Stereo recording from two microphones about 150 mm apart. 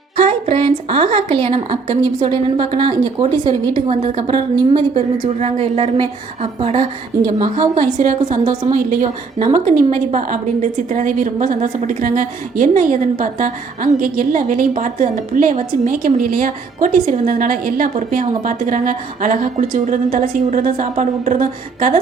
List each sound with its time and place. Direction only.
0.2 s a woman's voice: 45° right (ahead or behind)
3.5 s a woman's voice: 45° right (ahead or behind)
7.3 s a woman's voice: 30° right (ahead or behind)
7.8 s a woman's voice: 60° right (ahead or behind)